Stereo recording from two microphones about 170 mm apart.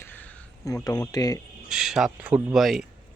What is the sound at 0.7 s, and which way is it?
Speech, 20° left (ahead or behind).